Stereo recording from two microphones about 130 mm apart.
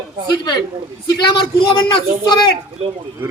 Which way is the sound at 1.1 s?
35° left (ahead or behind).